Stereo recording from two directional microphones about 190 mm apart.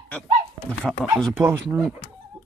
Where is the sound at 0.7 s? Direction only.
5° left (ahead or behind).